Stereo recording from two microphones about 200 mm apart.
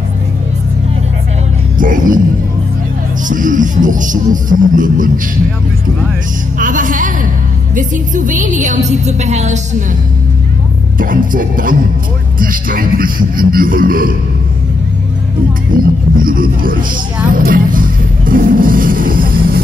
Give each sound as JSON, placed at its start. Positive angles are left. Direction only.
{"t": 1.8, "sound": "speech", "side_deg": -40}
{"t": 3.3, "sound": "speech", "side_deg": -40}
{"t": 6.6, "sound": "speech", "side_deg": -40}
{"t": 11.0, "sound": "speech", "side_deg": -45}
{"t": 15.7, "sound": "speech", "side_deg": -45}